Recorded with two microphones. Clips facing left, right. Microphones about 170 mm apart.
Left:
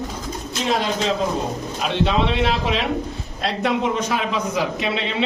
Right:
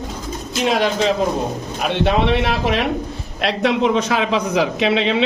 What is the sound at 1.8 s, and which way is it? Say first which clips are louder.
A man's voice: right 3 dB; 60° right (ahead or behind).